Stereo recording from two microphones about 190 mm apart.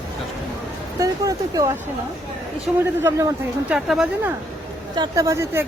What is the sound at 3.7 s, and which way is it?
Speech, 5° right (ahead or behind).